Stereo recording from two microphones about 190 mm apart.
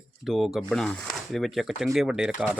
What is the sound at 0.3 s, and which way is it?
Speech, centre (ahead or behind).